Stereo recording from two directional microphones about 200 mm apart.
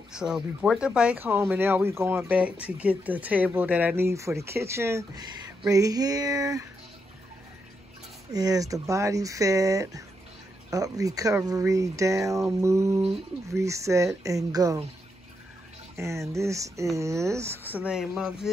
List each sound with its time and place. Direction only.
0.1 s speech: 5° right (ahead or behind)
8.3 s speech: 15° right (ahead or behind)
16.0 s speech: 15° right (ahead or behind)